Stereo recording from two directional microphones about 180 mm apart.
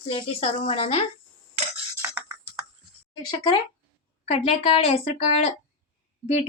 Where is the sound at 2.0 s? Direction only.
10° right (ahead or behind).